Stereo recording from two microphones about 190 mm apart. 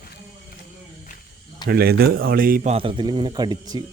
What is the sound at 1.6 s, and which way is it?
Speech, 55° right (ahead or behind).